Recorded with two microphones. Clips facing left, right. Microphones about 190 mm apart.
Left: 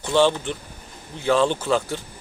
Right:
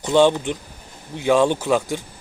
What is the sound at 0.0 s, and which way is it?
Speech, 15° right (ahead or behind).